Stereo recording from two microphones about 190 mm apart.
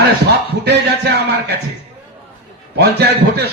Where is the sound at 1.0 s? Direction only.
60° right (ahead or behind).